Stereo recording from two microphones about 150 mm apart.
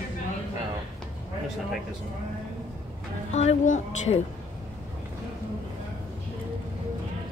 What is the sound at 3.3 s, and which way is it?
Speech, 45° left (ahead or behind).